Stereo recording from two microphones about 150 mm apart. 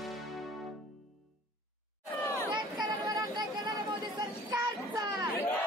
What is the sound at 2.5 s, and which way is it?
Chatter, 25° right (ahead or behind).